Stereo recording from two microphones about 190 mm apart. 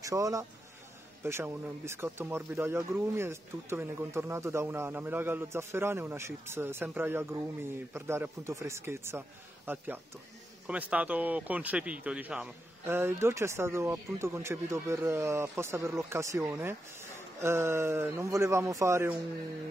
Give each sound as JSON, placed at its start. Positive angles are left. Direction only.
{"t": 0.0, "sound": "speech", "side_deg": -15}